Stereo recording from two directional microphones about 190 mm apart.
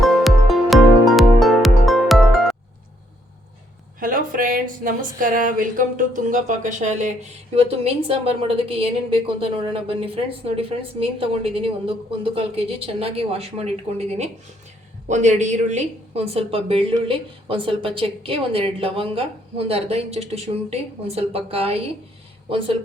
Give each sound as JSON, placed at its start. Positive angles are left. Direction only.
{"t": 0.0, "sound": "music", "side_deg": 0}
{"t": 4.0, "sound": "speech", "side_deg": -45}